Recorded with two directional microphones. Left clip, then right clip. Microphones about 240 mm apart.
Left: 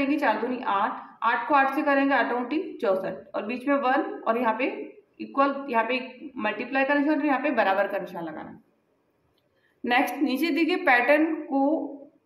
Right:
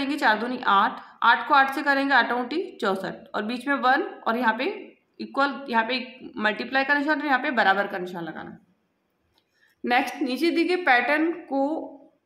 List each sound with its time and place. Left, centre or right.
0.0 s a woman's voice: right
9.8 s a woman's voice: centre